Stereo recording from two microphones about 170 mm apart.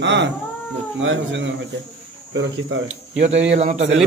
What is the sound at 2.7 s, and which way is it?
Speech, 90° right.